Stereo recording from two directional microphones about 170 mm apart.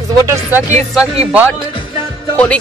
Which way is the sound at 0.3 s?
10° right (ahead or behind).